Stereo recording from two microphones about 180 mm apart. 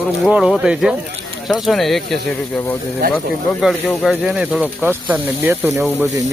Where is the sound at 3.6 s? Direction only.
Centre (ahead or behind).